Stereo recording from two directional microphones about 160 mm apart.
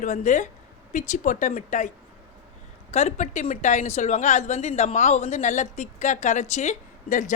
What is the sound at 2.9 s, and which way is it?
A woman's voice, 45° left (ahead or behind).